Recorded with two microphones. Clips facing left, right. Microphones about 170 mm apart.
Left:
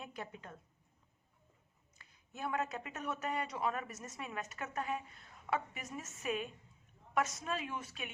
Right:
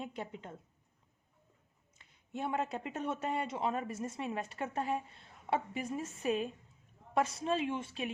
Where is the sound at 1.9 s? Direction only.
25° right (ahead or behind).